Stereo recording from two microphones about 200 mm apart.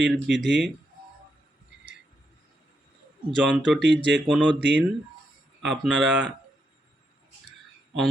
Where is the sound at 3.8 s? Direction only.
60° right (ahead or behind).